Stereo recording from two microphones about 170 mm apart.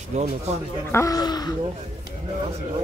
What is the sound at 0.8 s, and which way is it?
Speech, 15° left (ahead or behind).